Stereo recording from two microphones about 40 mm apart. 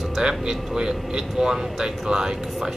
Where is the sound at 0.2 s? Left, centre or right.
Centre.